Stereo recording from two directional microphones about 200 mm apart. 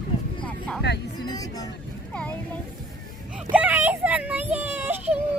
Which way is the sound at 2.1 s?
5° left (ahead or behind).